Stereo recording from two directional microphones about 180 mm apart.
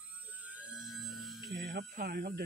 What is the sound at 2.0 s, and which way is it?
Speech, 70° right (ahead or behind).